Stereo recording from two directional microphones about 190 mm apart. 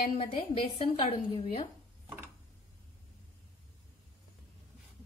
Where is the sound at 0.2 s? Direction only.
30° left (ahead or behind).